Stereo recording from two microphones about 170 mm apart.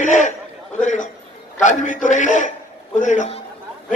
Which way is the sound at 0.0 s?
45° left (ahead or behind).